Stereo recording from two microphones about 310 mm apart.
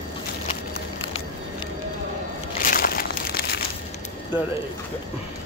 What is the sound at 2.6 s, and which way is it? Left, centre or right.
Crumpling, left.